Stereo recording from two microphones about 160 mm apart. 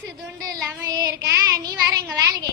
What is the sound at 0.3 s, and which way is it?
Child singing, 20° right (ahead or behind).